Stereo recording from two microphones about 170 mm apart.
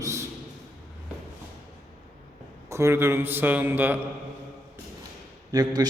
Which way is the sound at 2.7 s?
15° right (ahead or behind).